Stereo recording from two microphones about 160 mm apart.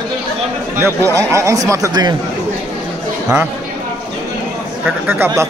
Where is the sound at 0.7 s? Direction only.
15° right (ahead or behind).